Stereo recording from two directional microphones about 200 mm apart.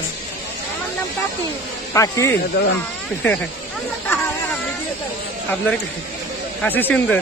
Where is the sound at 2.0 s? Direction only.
15° left (ahead or behind).